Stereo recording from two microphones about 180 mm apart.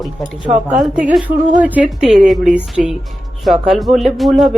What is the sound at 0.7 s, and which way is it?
Speech, 5° right (ahead or behind).